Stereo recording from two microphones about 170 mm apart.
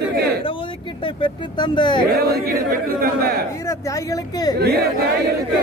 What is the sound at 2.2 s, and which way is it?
Speech, 65° right (ahead or behind).